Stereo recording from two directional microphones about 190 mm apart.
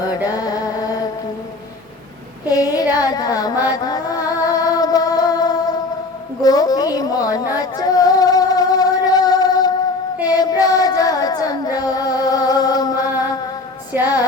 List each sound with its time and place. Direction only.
0.1 s music: 20° left (ahead or behind)
2.5 s mantra: 20° left (ahead or behind)
6.4 s child singing: 20° left (ahead or behind)
10.2 s music: 20° left (ahead or behind)
13.9 s music: 10° right (ahead or behind)